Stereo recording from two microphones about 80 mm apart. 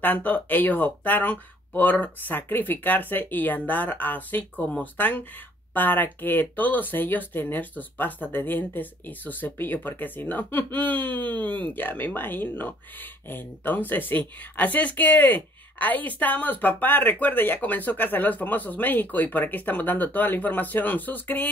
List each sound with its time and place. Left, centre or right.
0.0 s a woman's voice: left